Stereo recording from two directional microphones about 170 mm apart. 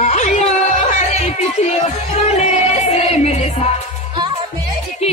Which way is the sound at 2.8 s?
40° left (ahead or behind).